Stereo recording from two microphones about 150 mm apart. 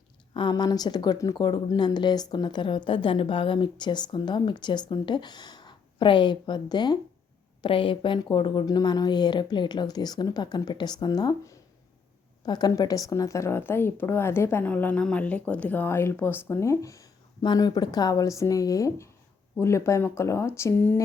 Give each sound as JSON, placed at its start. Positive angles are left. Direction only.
{"t": 0.3, "sound": "a woman's voice", "side_deg": 30}